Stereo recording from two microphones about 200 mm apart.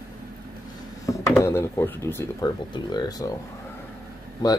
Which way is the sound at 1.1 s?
15° left (ahead or behind).